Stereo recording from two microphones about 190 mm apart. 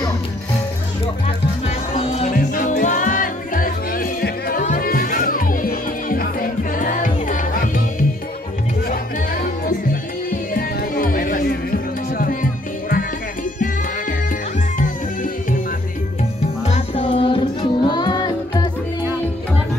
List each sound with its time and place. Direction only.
1.2 s music: 35° left (ahead or behind)
2.3 s music: 45° left (ahead or behind)
8.8 s music: 50° left (ahead or behind)
16.2 s music: 35° left (ahead or behind)